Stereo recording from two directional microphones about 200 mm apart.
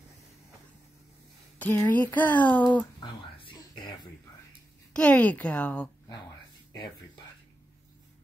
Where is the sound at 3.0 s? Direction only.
25° left (ahead or behind).